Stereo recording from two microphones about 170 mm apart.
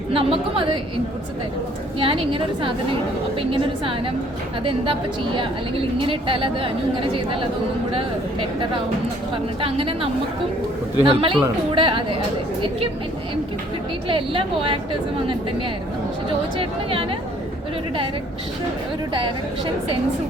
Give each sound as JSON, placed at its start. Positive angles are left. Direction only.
{"t": 0.1, "sound": "a woman's voice", "side_deg": -35}
{"t": 2.0, "sound": "a woman's voice", "side_deg": -30}
{"t": 14.1, "sound": "a woman's voice", "side_deg": -30}
{"t": 16.6, "sound": "a woman's voice", "side_deg": -35}